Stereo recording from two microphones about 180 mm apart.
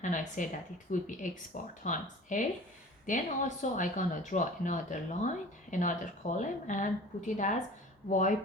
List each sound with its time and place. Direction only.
0.0 s speech: 45° left (ahead or behind)